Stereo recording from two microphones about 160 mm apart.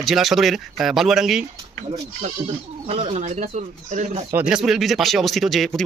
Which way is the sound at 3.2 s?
50° right (ahead or behind).